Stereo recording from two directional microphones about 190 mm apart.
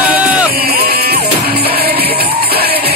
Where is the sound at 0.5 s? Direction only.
55° right (ahead or behind).